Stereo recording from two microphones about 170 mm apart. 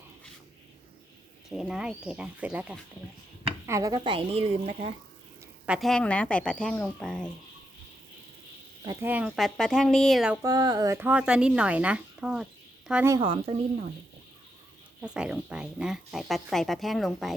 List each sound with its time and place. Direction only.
1.5 s speech: centre (ahead or behind)
3.7 s a woman's voice: 20° right (ahead or behind); by 4.9 s 35° right (ahead or behind)
5.6 s speech: centre (ahead or behind)
8.8 s speech: 20° right (ahead or behind)
9.0 s speech: 5° right (ahead or behind)
10.4 s speech: 25° right (ahead or behind); by 12.5 s 5° right (ahead or behind)
13.1 s a woman's voice: 25° right (ahead or behind)
15.0 s speech: 5° right (ahead or behind)